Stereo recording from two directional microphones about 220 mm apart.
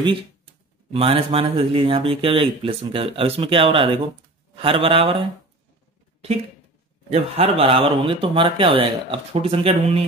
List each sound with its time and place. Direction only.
0.9 s speech: 25° right (ahead or behind)
7.1 s speech: 30° right (ahead or behind)